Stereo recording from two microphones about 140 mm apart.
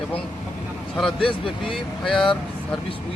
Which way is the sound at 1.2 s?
40° left (ahead or behind).